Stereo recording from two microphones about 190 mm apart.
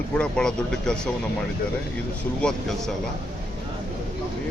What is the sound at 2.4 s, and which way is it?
Speech, 5° left (ahead or behind).